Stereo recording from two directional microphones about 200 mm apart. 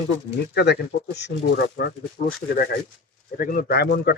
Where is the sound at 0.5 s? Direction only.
55° left (ahead or behind).